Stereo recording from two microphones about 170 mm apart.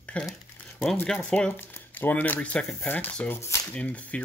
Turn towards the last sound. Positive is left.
turn(degrees=10)  # may be behind; listen again after turning